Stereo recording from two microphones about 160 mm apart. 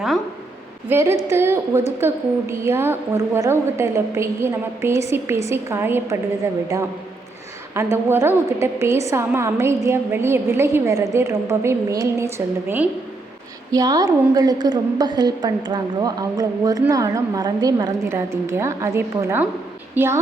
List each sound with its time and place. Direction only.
0.9 s a woman's voice: 15° right (ahead or behind)
7.8 s a woman's voice: 15° right (ahead or behind)